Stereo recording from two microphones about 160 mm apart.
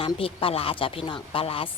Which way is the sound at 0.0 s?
35° left (ahead or behind).